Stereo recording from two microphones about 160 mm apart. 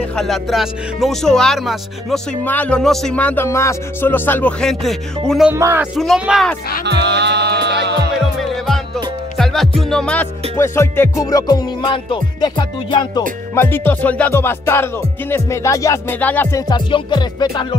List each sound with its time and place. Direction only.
0.1 s speech: centre (ahead or behind)
2.4 s music: 10° left (ahead or behind)
5.5 s speech: 15° right (ahead or behind)
5.9 s speech: centre (ahead or behind)
6.8 s music: 90° right
8.2 s music: centre (ahead or behind)
10.6 s music: 15° left (ahead or behind)
13.6 s music: 15° left (ahead or behind)
16.6 s music: 25° left (ahead or behind)